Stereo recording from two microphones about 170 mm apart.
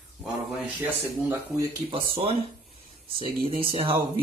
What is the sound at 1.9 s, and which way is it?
Speech, 30° right (ahead or behind).